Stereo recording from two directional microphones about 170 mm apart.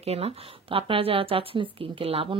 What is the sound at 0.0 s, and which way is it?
Speech, 35° right (ahead or behind).